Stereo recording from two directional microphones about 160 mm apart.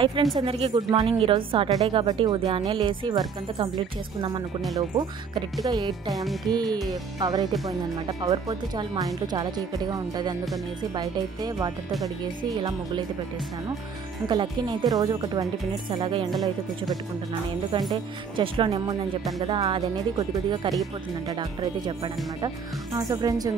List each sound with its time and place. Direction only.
0.0 s a woman's voice: 35° right (ahead or behind)
0.7 s a woman's voice: 25° right (ahead or behind)
6.1 s music: centre (ahead or behind)
6.5 s speech: 25° right (ahead or behind)
14.2 s speech: 25° right (ahead or behind)
17.9 s a woman's voice: 30° right (ahead or behind)